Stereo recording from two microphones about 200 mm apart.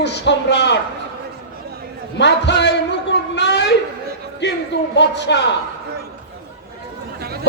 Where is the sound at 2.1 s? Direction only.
60° left (ahead or behind).